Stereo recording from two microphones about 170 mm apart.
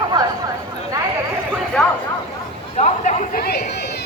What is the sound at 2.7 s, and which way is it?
Speech, 40° left (ahead or behind).